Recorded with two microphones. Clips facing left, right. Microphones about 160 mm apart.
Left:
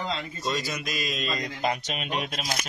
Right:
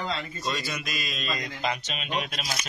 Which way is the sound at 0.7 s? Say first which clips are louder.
Left 3 dB; 40° left (ahead or behind).